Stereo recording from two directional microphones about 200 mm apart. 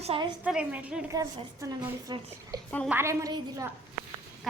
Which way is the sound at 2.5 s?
20° right (ahead or behind).